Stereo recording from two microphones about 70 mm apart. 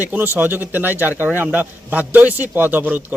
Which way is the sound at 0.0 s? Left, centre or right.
Right.